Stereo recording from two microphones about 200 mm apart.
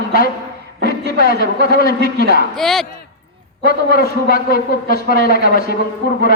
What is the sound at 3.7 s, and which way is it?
A man's voice, 50° left (ahead or behind).